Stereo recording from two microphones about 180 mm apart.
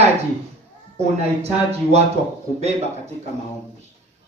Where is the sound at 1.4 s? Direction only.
35° right (ahead or behind).